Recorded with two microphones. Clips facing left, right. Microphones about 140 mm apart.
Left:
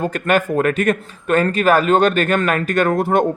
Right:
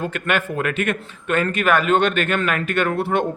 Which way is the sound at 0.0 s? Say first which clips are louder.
Left 5 dB; 40° left (ahead or behind).